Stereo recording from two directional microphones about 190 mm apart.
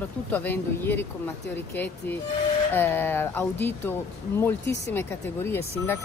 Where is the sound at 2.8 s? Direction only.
10° left (ahead or behind).